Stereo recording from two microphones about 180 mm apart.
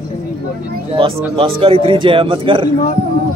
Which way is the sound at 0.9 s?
30° right (ahead or behind).